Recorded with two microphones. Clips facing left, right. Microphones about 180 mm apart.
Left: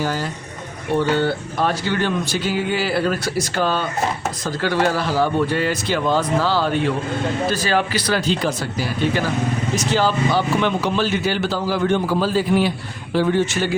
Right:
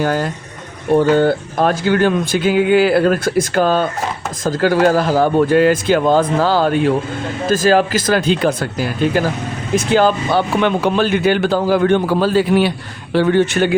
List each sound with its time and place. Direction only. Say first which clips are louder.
0.0 s speech: right 6 dB; 55° right (ahead or behind)
0.9 s speech: right 7 dB; 45° right (ahead or behind); by 13.7 s 60° right (ahead or behind)